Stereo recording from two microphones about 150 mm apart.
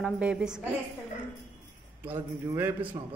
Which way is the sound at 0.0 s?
5° right (ahead or behind).